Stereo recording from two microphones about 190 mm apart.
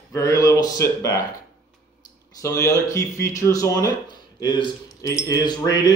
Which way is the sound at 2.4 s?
15° left (ahead or behind).